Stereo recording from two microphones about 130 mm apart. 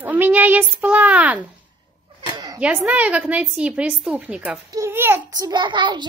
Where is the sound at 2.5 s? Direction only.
10° right (ahead or behind).